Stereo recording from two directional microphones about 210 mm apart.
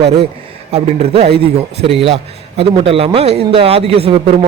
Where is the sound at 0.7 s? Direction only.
30° right (ahead or behind).